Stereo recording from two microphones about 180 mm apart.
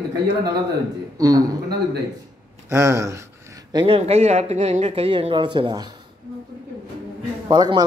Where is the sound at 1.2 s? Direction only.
20° right (ahead or behind).